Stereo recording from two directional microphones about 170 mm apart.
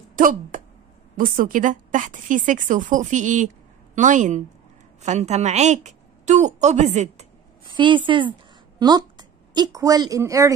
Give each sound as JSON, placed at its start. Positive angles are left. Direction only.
{"t": 0.1, "sound": "a woman's voice", "side_deg": -50}
{"t": 7.6, "sound": "a woman's voice", "side_deg": -30}